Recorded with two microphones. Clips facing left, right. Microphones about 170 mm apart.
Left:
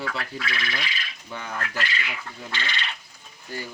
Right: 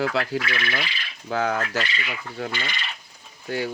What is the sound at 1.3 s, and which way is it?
Fowl, 85° right.